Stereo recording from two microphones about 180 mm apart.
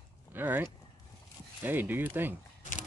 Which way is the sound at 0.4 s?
10° right (ahead or behind).